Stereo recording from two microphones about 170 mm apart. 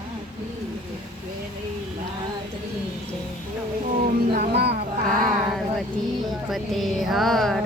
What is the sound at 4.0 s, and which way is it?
Music, 55° right (ahead or behind).